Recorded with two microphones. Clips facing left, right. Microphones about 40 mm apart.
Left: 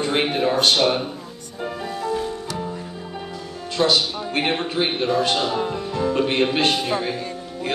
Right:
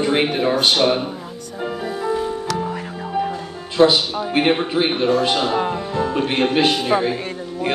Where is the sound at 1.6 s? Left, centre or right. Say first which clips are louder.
Right 3 dB; centre.